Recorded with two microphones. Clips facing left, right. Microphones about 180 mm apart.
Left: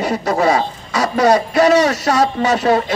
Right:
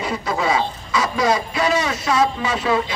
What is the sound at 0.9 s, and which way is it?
Speech, 70° left (ahead or behind).